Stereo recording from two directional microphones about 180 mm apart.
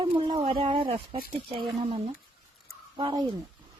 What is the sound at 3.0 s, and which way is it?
Speech, 25° right (ahead or behind).